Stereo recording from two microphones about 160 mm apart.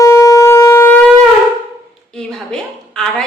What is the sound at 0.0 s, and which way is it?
Shofar, 20° left (ahead or behind).